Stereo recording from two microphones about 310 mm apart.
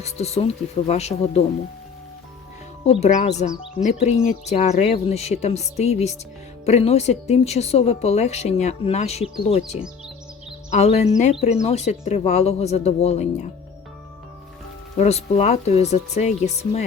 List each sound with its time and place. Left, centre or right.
0.0 s speech: centre
2.8 s speech: centre
14.9 s speech: left